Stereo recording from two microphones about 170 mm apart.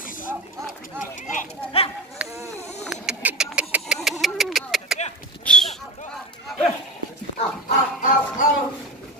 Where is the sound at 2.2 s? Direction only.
5° right (ahead or behind).